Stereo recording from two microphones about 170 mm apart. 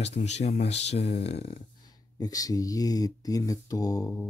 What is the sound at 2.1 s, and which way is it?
Speech, 20° left (ahead or behind).